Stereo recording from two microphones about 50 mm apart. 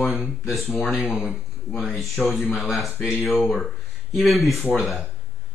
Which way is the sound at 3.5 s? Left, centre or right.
Centre.